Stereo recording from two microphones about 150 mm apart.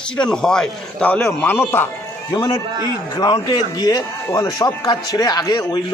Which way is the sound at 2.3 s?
30° left (ahead or behind).